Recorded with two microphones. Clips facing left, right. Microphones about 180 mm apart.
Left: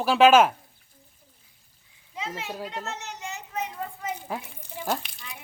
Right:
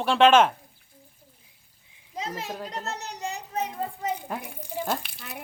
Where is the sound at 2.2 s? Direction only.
40° right (ahead or behind).